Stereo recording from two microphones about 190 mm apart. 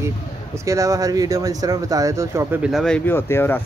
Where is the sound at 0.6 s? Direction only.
15° right (ahead or behind).